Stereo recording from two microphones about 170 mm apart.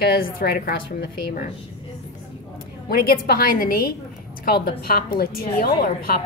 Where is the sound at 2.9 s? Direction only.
65° left (ahead or behind).